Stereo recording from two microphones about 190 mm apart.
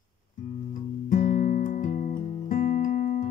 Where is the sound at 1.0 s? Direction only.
40° left (ahead or behind).